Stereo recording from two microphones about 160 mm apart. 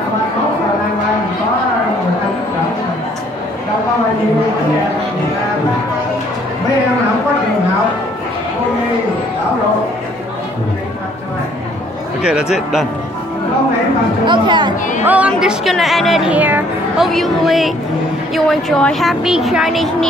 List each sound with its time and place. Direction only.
12.2 s speech: 5° right (ahead or behind)
14.2 s speech: 30° right (ahead or behind)
15.0 s speech: 10° right (ahead or behind)